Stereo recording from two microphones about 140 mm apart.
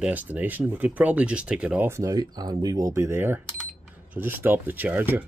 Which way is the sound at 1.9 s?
20° right (ahead or behind).